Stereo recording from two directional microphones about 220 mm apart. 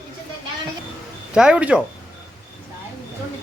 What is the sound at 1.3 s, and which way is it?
Speech, 5° right (ahead or behind).